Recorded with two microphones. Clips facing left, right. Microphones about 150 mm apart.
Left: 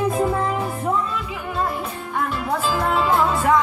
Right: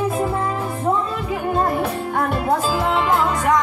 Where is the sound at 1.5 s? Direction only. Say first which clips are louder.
Right 4 dB; 45° right (ahead or behind).